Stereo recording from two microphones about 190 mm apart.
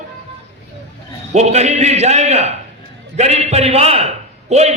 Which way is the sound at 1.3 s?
35° right (ahead or behind).